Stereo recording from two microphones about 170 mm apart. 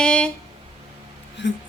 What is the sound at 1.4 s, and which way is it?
Speech, 90° left.